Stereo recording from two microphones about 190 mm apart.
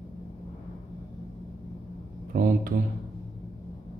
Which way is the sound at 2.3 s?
45° right (ahead or behind).